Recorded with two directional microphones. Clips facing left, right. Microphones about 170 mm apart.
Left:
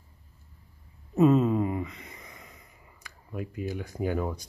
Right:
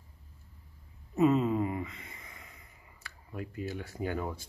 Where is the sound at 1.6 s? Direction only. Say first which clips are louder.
Left 3 dB; 25° left (ahead or behind).